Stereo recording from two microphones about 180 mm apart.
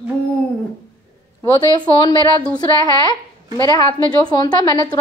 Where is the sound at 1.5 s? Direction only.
25° left (ahead or behind).